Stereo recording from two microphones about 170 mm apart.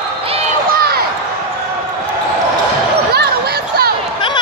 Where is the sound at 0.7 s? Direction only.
65° right (ahead or behind).